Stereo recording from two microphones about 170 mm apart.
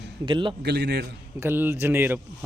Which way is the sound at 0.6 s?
75° right (ahead or behind).